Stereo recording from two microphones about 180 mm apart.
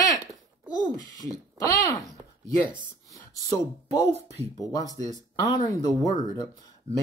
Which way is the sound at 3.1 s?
20° left (ahead or behind).